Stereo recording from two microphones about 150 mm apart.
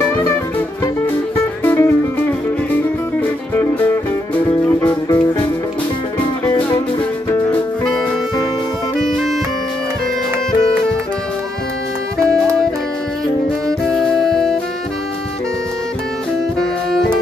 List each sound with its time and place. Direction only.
0.1 s music: 15° left (ahead or behind)
1.6 s music: 15° left (ahead or behind)
3.2 s music: 15° left (ahead or behind)
7.2 s music: 25° left (ahead or behind)
9.0 s music: centre (ahead or behind)
13.7 s music: 5° left (ahead or behind)